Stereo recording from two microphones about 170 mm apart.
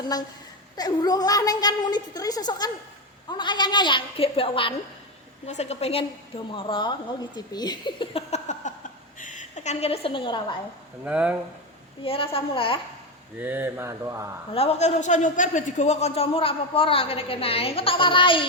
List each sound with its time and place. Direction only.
0.1 s a woman's voice: 20° left (ahead or behind)
8.3 s a sound: 45° left (ahead or behind)
9.1 s a man's voice: 50° left (ahead or behind); by 10.6 s 30° left (ahead or behind)
11.0 s mantra: 10° right (ahead or behind)
12.0 s a man's voice: 35° left (ahead or behind)
13.4 s mantra: 10° right (ahead or behind)
14.5 s a man's voice: 35° left (ahead or behind)